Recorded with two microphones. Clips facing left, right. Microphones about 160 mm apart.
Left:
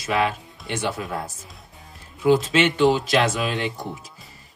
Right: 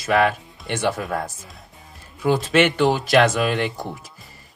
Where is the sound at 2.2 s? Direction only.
55° right (ahead or behind).